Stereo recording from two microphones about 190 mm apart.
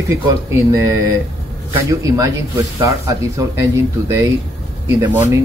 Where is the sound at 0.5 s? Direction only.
15° right (ahead or behind).